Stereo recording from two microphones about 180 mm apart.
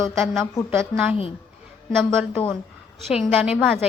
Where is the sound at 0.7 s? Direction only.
10° right (ahead or behind).